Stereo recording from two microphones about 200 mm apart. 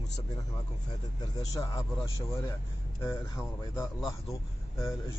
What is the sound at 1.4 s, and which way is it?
Speech, 15° left (ahead or behind).